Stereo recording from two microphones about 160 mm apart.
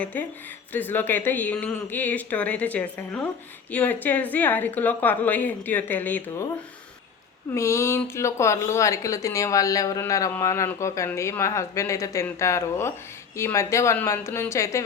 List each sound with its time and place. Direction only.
0.0 s a woman's voice: 10° left (ahead or behind)
7.5 s a woman's voice: 15° left (ahead or behind)